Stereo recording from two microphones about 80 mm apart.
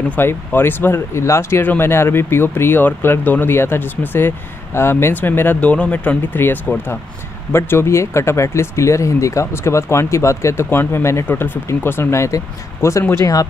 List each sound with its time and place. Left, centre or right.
0.1 s speech: left
13.2 s speech: left